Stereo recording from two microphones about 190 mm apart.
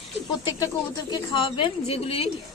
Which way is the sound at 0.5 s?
20° left (ahead or behind).